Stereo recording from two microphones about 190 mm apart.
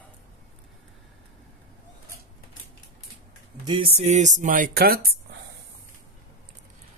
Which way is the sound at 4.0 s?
40° right (ahead or behind).